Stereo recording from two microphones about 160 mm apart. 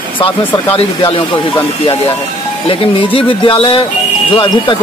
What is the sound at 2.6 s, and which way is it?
Speech, 35° left (ahead or behind).